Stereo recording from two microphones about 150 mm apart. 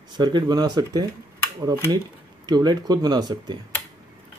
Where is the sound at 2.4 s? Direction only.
30° right (ahead or behind).